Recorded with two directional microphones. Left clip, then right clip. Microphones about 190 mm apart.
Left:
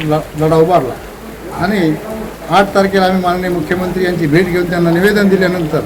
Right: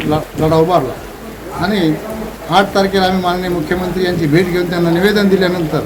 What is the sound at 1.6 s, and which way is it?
A man's voice, 10° right (ahead or behind).